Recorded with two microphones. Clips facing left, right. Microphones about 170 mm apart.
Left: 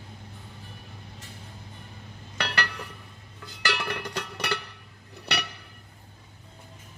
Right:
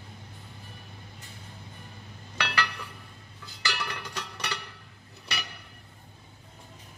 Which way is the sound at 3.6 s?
55° left (ahead or behind).